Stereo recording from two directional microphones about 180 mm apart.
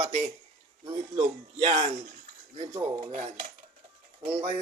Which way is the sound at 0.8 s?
30° right (ahead or behind).